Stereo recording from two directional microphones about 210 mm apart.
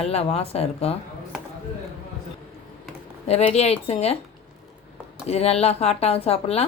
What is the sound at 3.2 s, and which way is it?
Speech, 30° left (ahead or behind).